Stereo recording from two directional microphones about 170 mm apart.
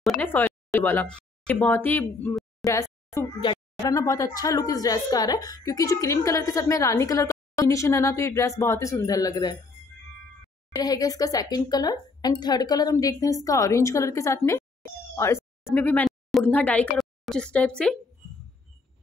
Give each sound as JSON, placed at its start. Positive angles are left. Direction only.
{"t": 0.2, "sound": "speech", "side_deg": 10}
{"t": 2.6, "sound": "a sound", "side_deg": 20}
{"t": 3.4, "sound": "speech", "side_deg": 20}
{"t": 10.7, "sound": "speech", "side_deg": 20}